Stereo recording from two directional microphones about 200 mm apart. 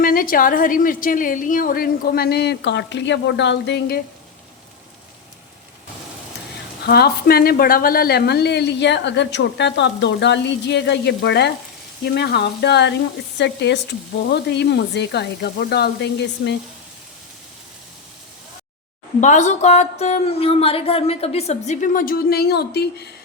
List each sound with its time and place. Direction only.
0.0 s a woman's voice: 45° left (ahead or behind)
6.8 s speech: 50° left (ahead or behind)
19.2 s speech: 35° left (ahead or behind); by 23.0 s 55° left (ahead or behind)